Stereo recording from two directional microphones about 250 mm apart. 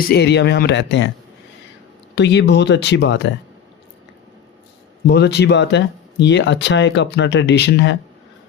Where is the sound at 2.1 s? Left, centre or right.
Left.